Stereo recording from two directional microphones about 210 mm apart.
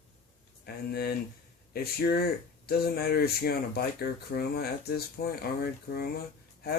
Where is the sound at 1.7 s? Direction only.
50° left (ahead or behind).